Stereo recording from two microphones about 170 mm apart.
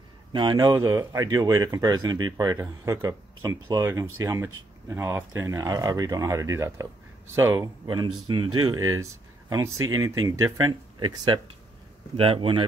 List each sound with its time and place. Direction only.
0.3 s speech: 25° right (ahead or behind)